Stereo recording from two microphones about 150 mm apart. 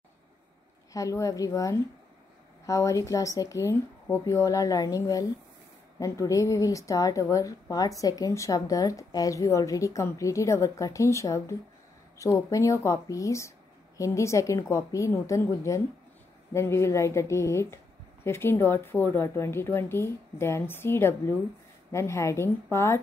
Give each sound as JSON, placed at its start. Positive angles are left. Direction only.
{"t": 0.9, "sound": "a woman's voice", "side_deg": 20}